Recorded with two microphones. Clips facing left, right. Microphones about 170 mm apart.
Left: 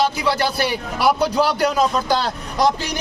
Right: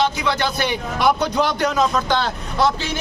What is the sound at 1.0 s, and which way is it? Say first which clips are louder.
Speech: even; 5° left (ahead or behind).